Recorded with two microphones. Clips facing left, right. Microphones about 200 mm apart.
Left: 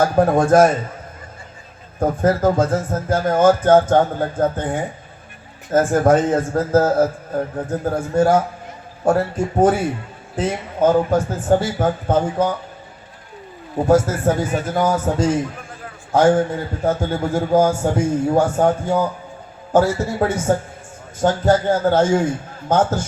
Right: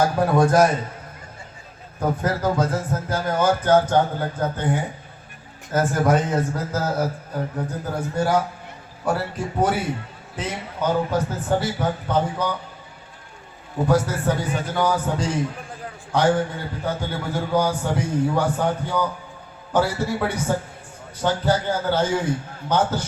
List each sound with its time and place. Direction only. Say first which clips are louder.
0.2 s a man's voice: left 5 dB; 50° left (ahead or behind)
2.0 s a man's voice: left 6 dB; 50° left (ahead or behind)
10.8 s a man's voice: left 6 dB; 50° left (ahead or behind)
13.8 s a man's voice: left 5 dB; 45° left (ahead or behind)